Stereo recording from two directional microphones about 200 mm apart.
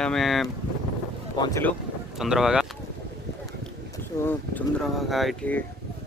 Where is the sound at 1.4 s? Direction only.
15° left (ahead or behind).